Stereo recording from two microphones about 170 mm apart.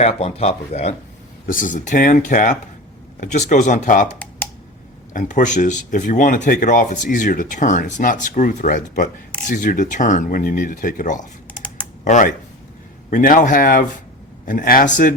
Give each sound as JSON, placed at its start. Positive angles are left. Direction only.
{"t": 0.0, "sound": "speech", "side_deg": 35}
{"t": 1.5, "sound": "speech", "side_deg": 50}
{"t": 5.1, "sound": "speech", "side_deg": 45}